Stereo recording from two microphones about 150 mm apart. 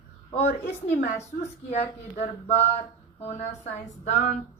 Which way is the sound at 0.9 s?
50° left (ahead or behind).